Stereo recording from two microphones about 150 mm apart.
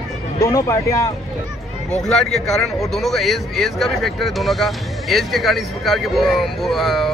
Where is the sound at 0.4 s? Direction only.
20° left (ahead or behind).